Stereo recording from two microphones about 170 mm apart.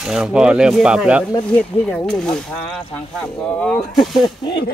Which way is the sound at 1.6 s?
5° left (ahead or behind).